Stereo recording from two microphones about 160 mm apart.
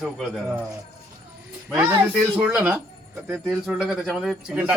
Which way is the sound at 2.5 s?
15° right (ahead or behind).